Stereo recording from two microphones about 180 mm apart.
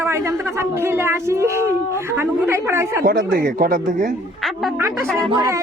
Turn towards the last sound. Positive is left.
turn(degrees=-20)  # may be behind; listen again after turning